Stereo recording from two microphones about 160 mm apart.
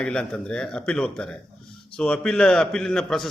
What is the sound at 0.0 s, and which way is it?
A man's voice, 5° left (ahead or behind).